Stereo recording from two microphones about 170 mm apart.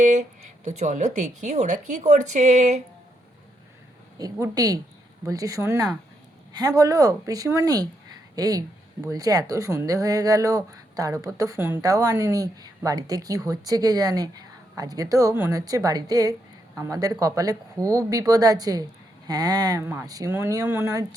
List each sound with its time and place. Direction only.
0.0 s speech: 45° right (ahead or behind)
4.2 s speech: 20° right (ahead or behind)